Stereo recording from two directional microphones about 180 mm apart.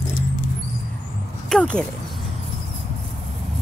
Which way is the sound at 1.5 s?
5° left (ahead or behind).